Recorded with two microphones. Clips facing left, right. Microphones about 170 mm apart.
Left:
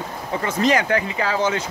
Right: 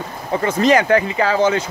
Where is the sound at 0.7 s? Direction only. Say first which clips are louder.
Right 6 dB; 45° right (ahead or behind).